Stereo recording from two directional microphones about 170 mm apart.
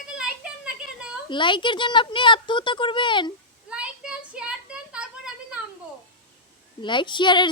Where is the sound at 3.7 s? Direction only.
5° right (ahead or behind).